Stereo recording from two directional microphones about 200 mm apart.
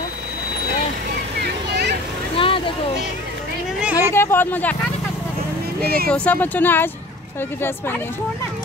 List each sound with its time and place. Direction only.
1.1 s vehicle: 55° right (ahead or behind)
2.3 s vehicle: 25° left (ahead or behind)
3.8 s a sound: 10° right (ahead or behind)
4.1 s speech: 10° left (ahead or behind)
6.0 s speech: 5° left (ahead or behind)